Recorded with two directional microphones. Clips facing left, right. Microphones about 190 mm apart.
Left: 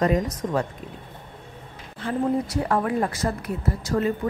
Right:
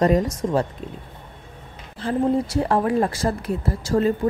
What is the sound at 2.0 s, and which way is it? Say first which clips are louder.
A woman's voice: right 3 dB; 30° right (ahead or behind).